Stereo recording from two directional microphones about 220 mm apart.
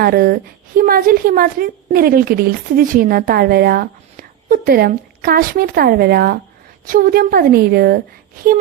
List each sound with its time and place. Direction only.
0.0 s a woman's voice: 40° right (ahead or behind)